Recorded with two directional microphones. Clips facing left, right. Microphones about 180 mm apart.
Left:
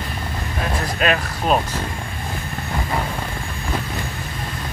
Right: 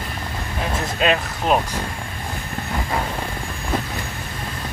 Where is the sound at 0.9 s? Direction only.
20° right (ahead or behind).